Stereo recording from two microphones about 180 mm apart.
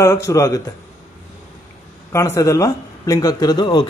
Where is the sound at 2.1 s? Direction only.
15° left (ahead or behind).